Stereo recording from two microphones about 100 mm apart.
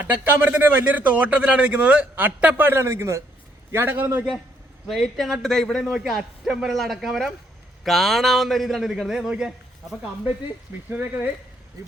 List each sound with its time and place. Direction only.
0.1 s a man's voice: 20° right (ahead or behind)
4.9 s a man's voice: centre (ahead or behind)
10.9 s a man's voice: 20° right (ahead or behind)